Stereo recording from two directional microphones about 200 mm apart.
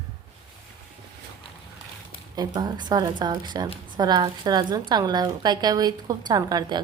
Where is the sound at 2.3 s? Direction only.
20° right (ahead or behind).